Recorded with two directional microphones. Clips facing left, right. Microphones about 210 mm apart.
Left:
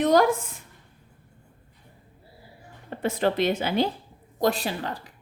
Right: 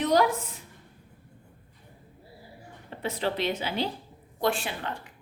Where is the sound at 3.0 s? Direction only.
50° left (ahead or behind).